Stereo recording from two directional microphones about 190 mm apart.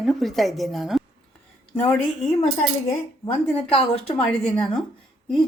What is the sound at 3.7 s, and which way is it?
Speech, 30° left (ahead or behind).